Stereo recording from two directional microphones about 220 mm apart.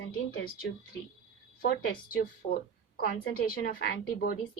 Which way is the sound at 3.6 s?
45° left (ahead or behind).